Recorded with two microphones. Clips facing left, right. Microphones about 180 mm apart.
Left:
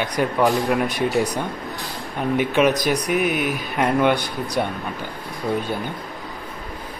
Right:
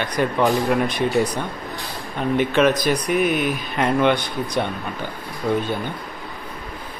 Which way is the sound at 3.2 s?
70° left (ahead or behind).